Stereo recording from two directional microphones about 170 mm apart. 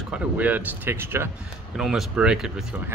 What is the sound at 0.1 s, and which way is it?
Speech, 10° right (ahead or behind).